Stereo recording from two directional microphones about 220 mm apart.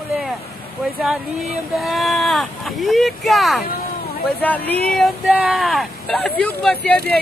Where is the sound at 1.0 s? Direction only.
Centre (ahead or behind).